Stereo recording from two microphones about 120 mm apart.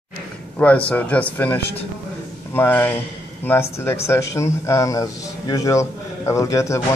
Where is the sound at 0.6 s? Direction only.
10° left (ahead or behind).